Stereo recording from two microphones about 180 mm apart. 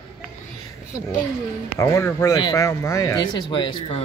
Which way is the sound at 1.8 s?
15° left (ahead or behind).